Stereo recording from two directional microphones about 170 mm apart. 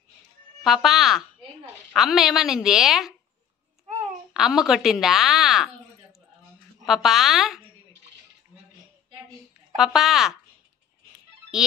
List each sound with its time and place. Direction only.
0.7 s a woman's voice: centre (ahead or behind)
4.3 s speech: 5° right (ahead or behind)
6.9 s a woman's voice: centre (ahead or behind)
9.8 s a woman's voice: centre (ahead or behind)